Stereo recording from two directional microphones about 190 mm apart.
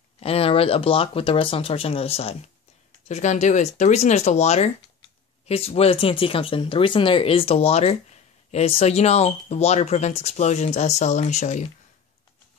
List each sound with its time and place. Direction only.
0.2 s speech: 30° left (ahead or behind)